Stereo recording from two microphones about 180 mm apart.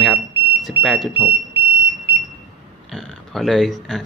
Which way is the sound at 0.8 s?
Centre (ahead or behind).